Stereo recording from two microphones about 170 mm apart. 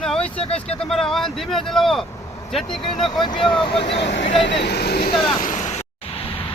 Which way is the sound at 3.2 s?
30° left (ahead or behind).